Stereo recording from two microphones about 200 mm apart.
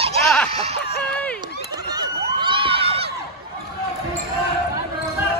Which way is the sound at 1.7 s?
20° right (ahead or behind).